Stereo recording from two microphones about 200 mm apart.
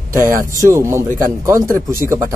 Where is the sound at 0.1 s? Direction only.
15° right (ahead or behind).